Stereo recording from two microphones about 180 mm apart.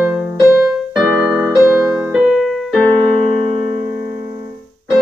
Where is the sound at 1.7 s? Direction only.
5° right (ahead or behind).